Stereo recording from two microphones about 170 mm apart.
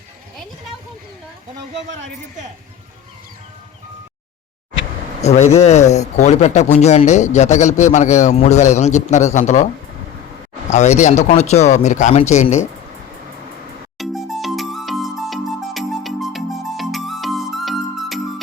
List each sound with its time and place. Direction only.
5.2 s speech: 40° left (ahead or behind)
10.7 s a man's voice: 40° left (ahead or behind)
14.0 s music: centre (ahead or behind)